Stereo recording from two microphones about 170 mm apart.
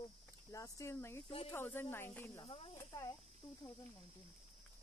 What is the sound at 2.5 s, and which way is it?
Speech, 30° left (ahead or behind).